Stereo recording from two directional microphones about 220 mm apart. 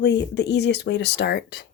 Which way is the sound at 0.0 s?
50° left (ahead or behind).